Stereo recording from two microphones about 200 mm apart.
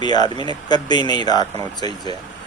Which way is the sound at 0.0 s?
20° left (ahead or behind).